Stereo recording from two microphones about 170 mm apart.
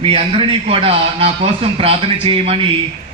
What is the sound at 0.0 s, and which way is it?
A man's voice, 35° right (ahead or behind).